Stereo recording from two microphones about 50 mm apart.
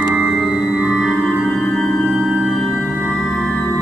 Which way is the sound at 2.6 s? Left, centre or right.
Centre.